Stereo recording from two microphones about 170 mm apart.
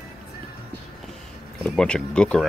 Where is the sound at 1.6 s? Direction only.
5° left (ahead or behind).